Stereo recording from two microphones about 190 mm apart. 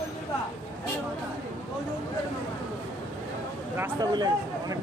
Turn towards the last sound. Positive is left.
turn(degrees=-20)  # may be behind; listen again after turning